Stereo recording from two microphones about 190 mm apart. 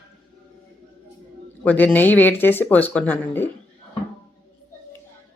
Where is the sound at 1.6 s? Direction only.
5° left (ahead or behind).